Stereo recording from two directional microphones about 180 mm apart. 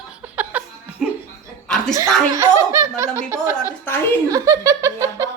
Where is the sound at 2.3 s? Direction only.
15° right (ahead or behind).